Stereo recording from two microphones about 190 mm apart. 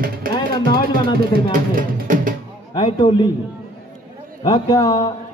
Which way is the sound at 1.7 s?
45° right (ahead or behind).